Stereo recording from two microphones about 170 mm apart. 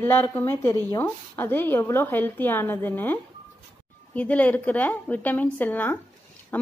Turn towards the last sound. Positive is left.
turn(degrees=10)  # may be behind; listen again after turning